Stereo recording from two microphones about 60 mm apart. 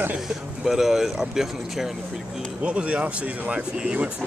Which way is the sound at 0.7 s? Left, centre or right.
Centre.